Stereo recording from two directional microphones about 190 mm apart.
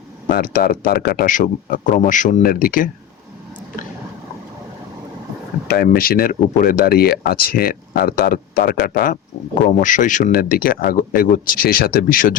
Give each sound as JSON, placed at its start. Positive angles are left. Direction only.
{"t": 0.3, "sound": "speech", "side_deg": 50}
{"t": 5.6, "sound": "speech", "side_deg": 55}